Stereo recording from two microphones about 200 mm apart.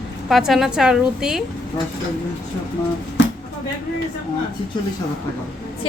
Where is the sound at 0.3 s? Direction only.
Centre (ahead or behind).